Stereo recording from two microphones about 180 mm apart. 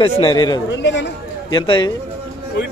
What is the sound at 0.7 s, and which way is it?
Speech, 80° left.